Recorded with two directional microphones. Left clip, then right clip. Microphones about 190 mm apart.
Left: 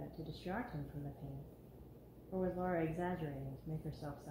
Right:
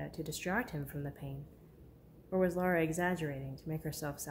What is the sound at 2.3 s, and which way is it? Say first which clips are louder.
Speech: right 7 dB; 30° right (ahead or behind).